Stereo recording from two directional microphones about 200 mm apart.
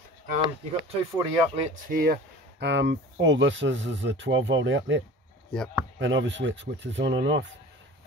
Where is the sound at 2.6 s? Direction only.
60° right (ahead or behind).